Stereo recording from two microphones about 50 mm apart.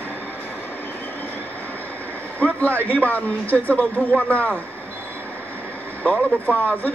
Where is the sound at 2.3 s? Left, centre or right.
Left.